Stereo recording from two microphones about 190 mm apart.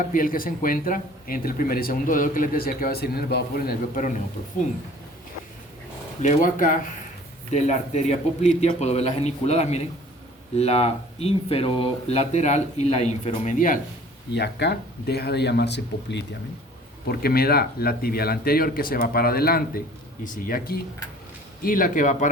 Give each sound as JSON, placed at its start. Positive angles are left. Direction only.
{"t": 0.0, "sound": "speech", "side_deg": 45}
{"t": 6.2, "sound": "speech", "side_deg": 45}
{"t": 14.3, "sound": "speech", "side_deg": 60}
{"t": 17.1, "sound": "speech", "side_deg": 55}